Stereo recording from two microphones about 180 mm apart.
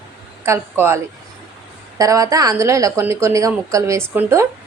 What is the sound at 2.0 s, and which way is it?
A woman's voice, 20° right (ahead or behind).